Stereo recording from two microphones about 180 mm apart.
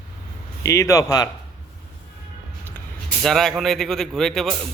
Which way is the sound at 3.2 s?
Centre (ahead or behind).